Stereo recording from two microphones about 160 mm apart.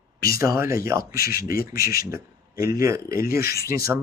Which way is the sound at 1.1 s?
70° left (ahead or behind).